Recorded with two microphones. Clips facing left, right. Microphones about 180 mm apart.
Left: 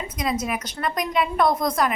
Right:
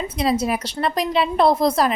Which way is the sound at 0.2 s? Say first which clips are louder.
Right 5 dB; 30° right (ahead or behind).